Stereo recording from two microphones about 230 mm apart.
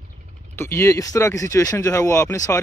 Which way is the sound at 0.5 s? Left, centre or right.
Centre.